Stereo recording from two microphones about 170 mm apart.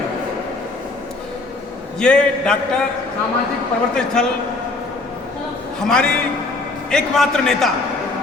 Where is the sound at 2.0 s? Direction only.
5° left (ahead or behind).